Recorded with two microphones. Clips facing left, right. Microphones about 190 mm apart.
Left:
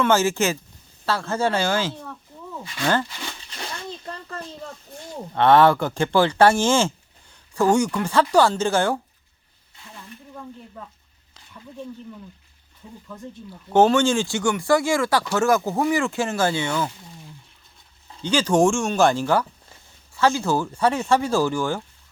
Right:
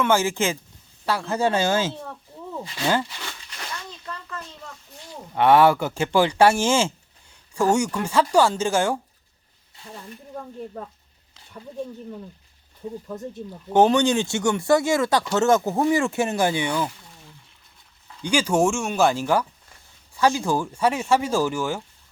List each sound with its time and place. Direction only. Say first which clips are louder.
0.0 s speech: left 2 dB; 15° right (ahead or behind)
2.8 s speech: left 1 dB; 10° right (ahead or behind)
3.6 s a sound: left 3 dB; 30° left (ahead or behind)
5.3 s speech: left 1 dB; 10° right (ahead or behind)
9.9 s snake: right 4 dB; 35° right (ahead or behind)
13.1 s speech: right 3 dB; 40° right (ahead or behind)
13.5 s speech: left 1 dB; 15° right (ahead or behind)
18.2 s speech: left 2 dB; 10° right (ahead or behind)